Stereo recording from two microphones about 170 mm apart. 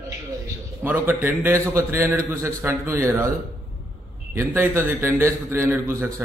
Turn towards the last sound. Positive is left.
turn(degrees=-15)  # may be behind; listen again after turning